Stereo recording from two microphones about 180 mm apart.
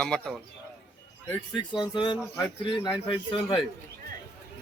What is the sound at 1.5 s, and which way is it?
A man's voice, 25° left (ahead or behind).